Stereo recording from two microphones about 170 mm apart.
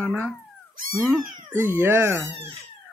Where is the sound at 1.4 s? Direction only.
15° right (ahead or behind).